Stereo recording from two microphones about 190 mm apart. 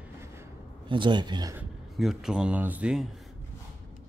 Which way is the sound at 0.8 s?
25° right (ahead or behind).